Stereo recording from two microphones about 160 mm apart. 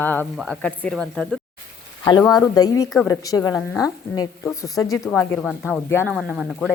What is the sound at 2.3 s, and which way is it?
Speech, 20° left (ahead or behind).